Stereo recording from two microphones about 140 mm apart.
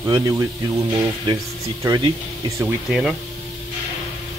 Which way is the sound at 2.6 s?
5° right (ahead or behind).